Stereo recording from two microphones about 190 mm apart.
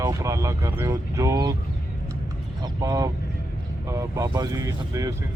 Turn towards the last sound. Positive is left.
turn(degrees=-15)  # may be behind; listen again after turning